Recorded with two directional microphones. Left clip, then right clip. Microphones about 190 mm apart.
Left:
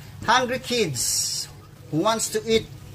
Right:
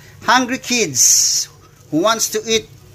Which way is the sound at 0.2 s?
35° right (ahead or behind).